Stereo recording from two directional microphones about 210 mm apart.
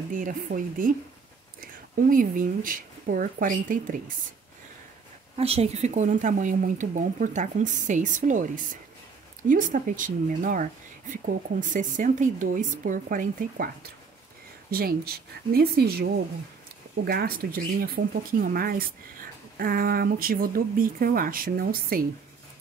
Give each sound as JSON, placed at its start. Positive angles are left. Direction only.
{"t": 0.1, "sound": "a woman's voice", "side_deg": -40}
{"t": 5.4, "sound": "a woman's voice", "side_deg": -30}
{"t": 14.7, "sound": "speech", "side_deg": -45}